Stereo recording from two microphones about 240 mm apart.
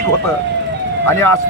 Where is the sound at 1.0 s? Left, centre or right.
Centre.